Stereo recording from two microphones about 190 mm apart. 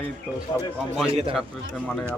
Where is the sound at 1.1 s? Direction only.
30° right (ahead or behind).